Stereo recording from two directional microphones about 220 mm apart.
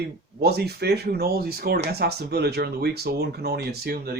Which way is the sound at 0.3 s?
45° right (ahead or behind).